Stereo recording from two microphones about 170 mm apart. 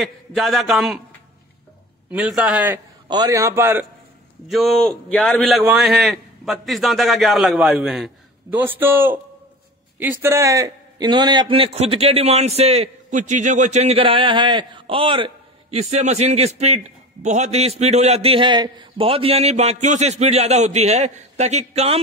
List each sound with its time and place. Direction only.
0.0 s a man's voice: centre (ahead or behind)
2.0 s a man's voice: 5° right (ahead or behind)
3.1 s a man's voice: 20° right (ahead or behind)
4.5 s a man's voice: centre (ahead or behind); by 22.0 s 35° right (ahead or behind)